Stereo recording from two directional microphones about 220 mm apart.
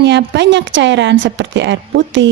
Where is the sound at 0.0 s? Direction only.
55° right (ahead or behind).